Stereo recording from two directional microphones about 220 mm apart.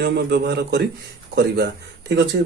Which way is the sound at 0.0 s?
50° right (ahead or behind).